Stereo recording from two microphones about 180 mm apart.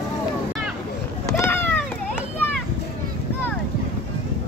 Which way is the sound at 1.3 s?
15° left (ahead or behind).